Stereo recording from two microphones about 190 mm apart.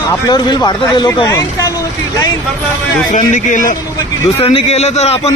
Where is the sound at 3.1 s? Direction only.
40° left (ahead or behind).